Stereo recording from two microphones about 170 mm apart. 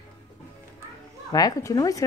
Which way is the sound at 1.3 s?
20° left (ahead or behind).